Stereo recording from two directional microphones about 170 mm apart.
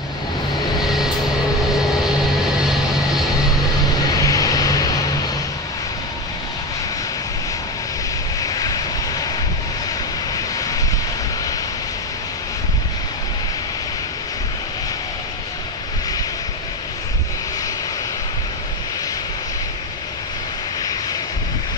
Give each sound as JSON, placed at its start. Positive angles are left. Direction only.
{"t": 0.7, "sound": "vehicle", "side_deg": 0}
{"t": 4.2, "sound": "vehicle", "side_deg": 20}
{"t": 8.4, "sound": "vehicle", "side_deg": 20}
{"t": 10.3, "sound": "vehicle", "side_deg": 20}
{"t": 20.8, "sound": "vehicle", "side_deg": 20}